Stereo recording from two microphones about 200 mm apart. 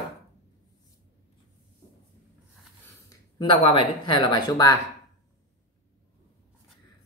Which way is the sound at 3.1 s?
20° left (ahead or behind).